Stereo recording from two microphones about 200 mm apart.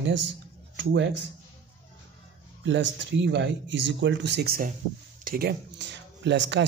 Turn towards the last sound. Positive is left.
turn(degrees=-65)  # may be behind; listen again after turning